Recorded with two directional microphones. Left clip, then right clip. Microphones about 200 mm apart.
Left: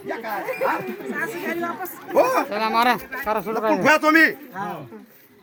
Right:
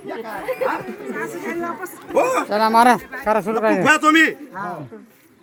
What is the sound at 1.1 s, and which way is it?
Speech, 10° left (ahead or behind).